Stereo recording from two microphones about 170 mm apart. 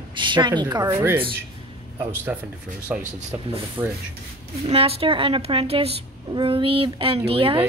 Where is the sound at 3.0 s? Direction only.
45° right (ahead or behind).